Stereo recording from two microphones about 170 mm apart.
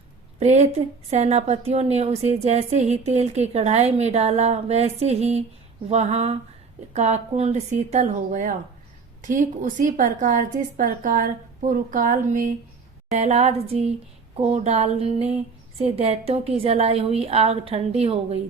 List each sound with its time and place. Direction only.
0.3 s a woman's voice: 40° right (ahead or behind)